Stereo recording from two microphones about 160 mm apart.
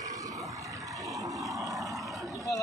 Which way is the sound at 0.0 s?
20° right (ahead or behind).